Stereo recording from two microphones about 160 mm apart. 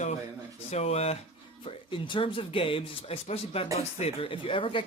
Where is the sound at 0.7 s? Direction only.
40° left (ahead or behind).